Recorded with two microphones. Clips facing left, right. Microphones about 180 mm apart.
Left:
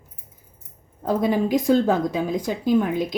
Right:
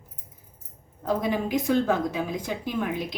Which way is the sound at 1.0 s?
35° left (ahead or behind).